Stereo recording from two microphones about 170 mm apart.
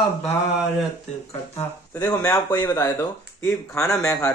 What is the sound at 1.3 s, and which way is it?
Speech, 20° left (ahead or behind).